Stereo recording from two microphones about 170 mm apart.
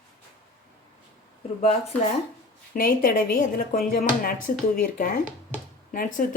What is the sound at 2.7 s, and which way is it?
Speech, 55° left (ahead or behind).